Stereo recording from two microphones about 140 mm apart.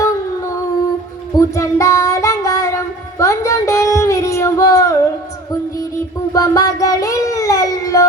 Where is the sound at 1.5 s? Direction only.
20° left (ahead or behind).